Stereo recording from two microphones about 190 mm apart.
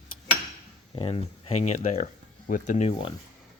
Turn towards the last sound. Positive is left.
turn(degrees=35)  # may be behind; listen again after turning